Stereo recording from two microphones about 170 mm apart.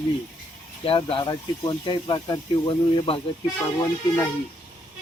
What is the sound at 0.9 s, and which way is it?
Speech, 30° left (ahead or behind).